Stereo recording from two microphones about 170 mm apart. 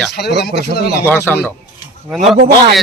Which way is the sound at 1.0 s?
10° left (ahead or behind).